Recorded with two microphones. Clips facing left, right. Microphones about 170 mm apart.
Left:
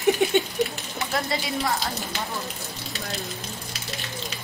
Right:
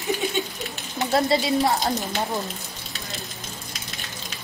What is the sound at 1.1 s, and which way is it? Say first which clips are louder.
Speech: right 7 dB; 30° right (ahead or behind).